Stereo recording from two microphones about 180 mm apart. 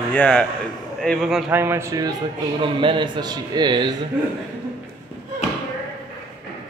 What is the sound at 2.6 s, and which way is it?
A man's voice, 25° right (ahead or behind).